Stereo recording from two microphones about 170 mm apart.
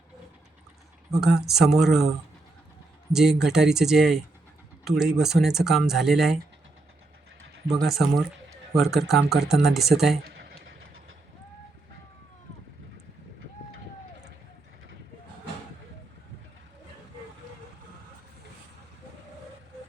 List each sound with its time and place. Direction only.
1.2 s speech: centre (ahead or behind)
3.1 s speech: 5° right (ahead or behind)
7.7 s speech: centre (ahead or behind)
10.2 s a sound: 65° right (ahead or behind)